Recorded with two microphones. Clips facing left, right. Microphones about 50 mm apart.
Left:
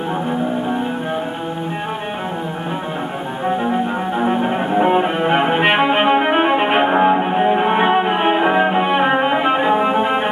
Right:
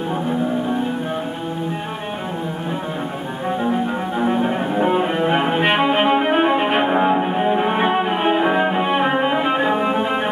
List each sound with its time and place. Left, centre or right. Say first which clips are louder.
4.2 s music: left 1 dB; left